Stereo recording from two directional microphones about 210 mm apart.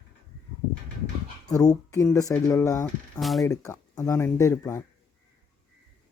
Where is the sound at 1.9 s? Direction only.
15° left (ahead or behind).